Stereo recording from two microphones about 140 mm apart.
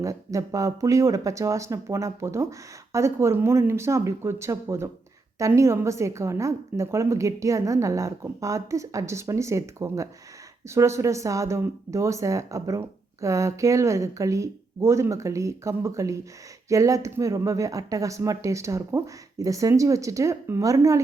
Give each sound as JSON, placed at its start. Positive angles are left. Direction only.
{"t": 0.0, "sound": "speech", "side_deg": -25}